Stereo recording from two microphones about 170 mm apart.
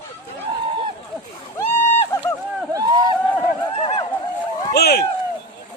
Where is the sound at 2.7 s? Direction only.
20° right (ahead or behind).